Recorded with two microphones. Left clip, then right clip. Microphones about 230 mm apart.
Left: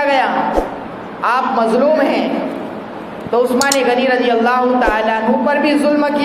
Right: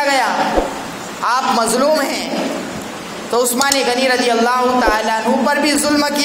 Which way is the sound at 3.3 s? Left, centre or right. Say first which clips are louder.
Left 2 dB; right.